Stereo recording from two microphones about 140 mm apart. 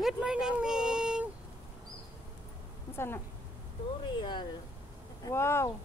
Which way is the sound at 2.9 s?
15° left (ahead or behind).